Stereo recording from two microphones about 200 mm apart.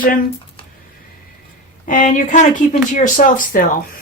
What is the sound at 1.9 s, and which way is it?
A woman's voice, 40° left (ahead or behind).